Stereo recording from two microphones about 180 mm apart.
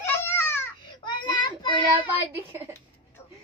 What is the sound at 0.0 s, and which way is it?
Baby cry, 10° left (ahead or behind).